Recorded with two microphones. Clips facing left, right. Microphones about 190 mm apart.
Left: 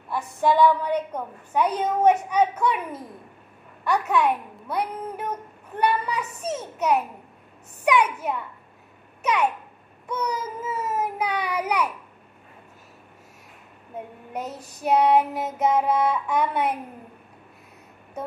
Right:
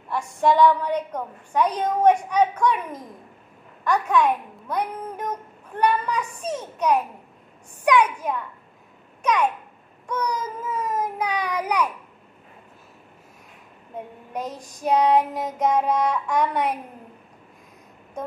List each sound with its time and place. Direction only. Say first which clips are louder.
0.1 s a woman's voice: right 1 dB; 5° left (ahead or behind)
14.3 s child singing: right 2 dB; 5° left (ahead or behind)